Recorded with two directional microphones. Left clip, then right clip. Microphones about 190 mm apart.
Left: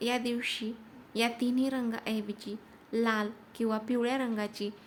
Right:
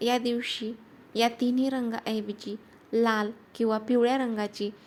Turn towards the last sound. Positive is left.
turn(degrees=-15)  # may be behind; listen again after turning